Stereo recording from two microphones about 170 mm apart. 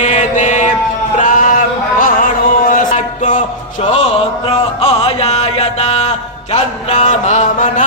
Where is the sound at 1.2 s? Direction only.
50° left (ahead or behind).